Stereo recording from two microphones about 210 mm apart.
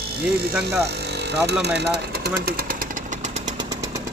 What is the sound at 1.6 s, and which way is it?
Engine, 50° right (ahead or behind).